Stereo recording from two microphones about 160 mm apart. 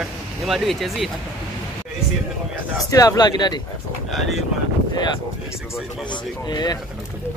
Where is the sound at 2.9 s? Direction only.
20° left (ahead or behind).